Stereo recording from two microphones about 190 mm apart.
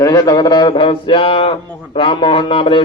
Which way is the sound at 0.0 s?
15° left (ahead or behind).